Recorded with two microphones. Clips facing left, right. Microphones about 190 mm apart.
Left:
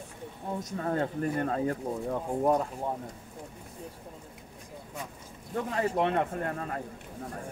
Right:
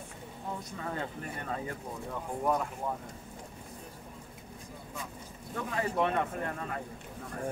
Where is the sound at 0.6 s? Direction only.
45° left (ahead or behind).